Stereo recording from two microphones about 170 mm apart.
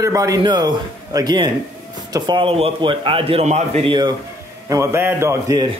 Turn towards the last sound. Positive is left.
turn(degrees=-20)  # may be behind; listen again after turning